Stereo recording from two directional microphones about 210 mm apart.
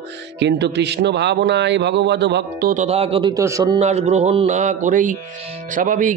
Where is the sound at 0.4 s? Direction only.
55° right (ahead or behind).